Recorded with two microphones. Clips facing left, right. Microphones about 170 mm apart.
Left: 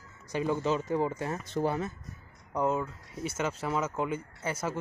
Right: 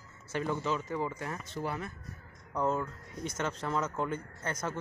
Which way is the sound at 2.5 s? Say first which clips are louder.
Left 2 dB; 10° left (ahead or behind).